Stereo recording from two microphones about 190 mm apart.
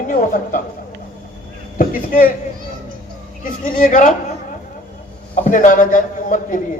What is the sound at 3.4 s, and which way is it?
Speech, 45° left (ahead or behind).